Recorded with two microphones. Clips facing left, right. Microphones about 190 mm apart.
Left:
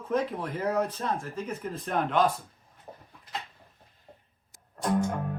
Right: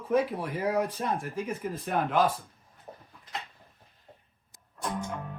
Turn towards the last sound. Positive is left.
turn(degrees=45)  # may be behind; listen again after turning